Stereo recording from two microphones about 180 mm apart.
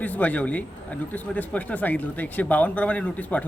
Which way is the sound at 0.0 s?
10° left (ahead or behind).